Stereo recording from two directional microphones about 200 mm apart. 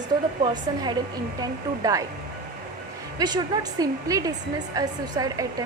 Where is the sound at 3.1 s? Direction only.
20° right (ahead or behind).